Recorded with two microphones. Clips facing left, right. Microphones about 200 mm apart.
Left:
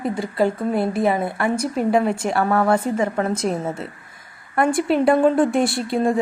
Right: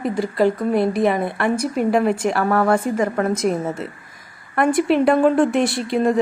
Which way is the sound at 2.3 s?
25° left (ahead or behind).